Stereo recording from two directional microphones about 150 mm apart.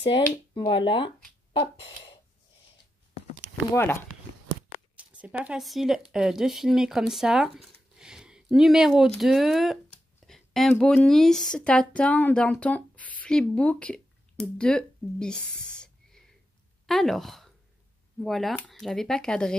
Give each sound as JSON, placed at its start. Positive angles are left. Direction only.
{"t": 0.1, "sound": "speech", "side_deg": 30}
{"t": 3.7, "sound": "speech", "side_deg": 15}
{"t": 4.9, "sound": "speech", "side_deg": -10}
{"t": 16.8, "sound": "speech", "side_deg": 0}